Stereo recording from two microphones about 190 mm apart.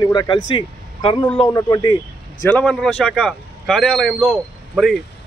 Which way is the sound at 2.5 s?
5° left (ahead or behind).